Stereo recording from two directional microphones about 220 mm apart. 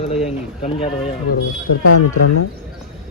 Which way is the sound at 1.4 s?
70° left (ahead or behind).